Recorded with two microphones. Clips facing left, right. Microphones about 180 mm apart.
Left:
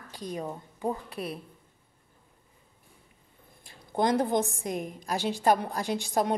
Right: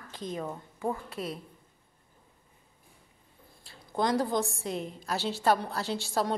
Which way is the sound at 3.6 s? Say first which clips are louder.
Left 3 dB; 20° left (ahead or behind).